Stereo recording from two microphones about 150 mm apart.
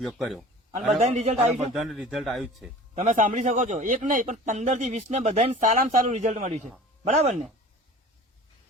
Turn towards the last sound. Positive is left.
turn(degrees=-45)  # may be behind; listen again after turning